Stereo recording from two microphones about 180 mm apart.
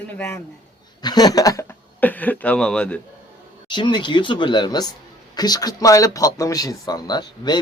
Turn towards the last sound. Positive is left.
turn(degrees=25)  # may be behind; listen again after turning